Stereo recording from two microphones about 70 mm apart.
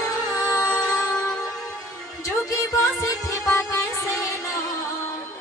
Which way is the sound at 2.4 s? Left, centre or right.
Left.